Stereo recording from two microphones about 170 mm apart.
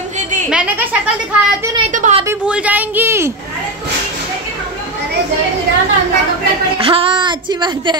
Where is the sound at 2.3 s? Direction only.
10° right (ahead or behind).